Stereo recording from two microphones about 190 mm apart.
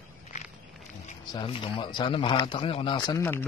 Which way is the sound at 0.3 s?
40° left (ahead or behind).